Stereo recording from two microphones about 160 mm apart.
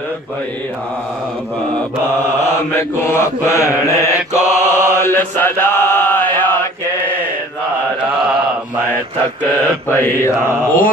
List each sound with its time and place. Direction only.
2.4 s mantra: 15° left (ahead or behind)
9.8 s mantra: 15° left (ahead or behind)